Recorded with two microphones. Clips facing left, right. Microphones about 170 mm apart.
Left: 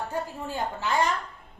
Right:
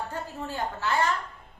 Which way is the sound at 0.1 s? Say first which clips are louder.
Left 3 dB; 15° left (ahead or behind).